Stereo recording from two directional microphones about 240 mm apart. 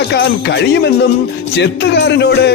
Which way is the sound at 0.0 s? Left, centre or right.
Left.